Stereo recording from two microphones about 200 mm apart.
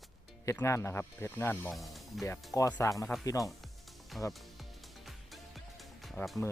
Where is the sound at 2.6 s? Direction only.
15° left (ahead or behind).